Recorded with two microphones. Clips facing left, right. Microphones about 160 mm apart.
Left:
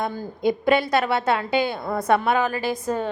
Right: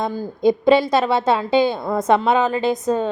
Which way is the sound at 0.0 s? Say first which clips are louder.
Right 5 dB; 15° right (ahead or behind).